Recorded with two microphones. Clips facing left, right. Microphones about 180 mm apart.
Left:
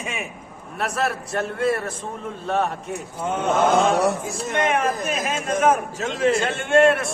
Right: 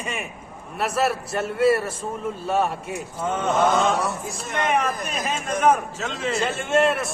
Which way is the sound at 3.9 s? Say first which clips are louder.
Left 5 dB; 65° left (ahead or behind).